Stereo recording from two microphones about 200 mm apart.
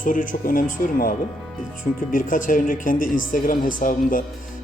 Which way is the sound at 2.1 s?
40° left (ahead or behind).